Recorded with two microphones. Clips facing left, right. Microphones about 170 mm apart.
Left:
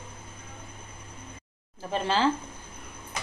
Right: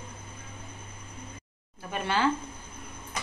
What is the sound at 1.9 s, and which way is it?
Speech, 30° left (ahead or behind).